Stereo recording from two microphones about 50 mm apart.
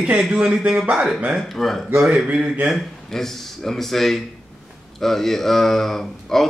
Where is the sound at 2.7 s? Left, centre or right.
Centre.